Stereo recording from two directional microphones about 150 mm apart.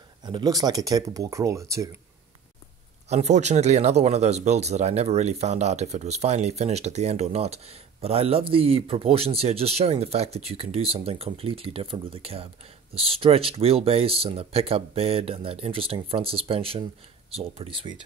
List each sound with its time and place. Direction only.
0.2 s speech: 30° right (ahead or behind)
3.1 s speech: 50° right (ahead or behind); by 18.0 s 35° right (ahead or behind)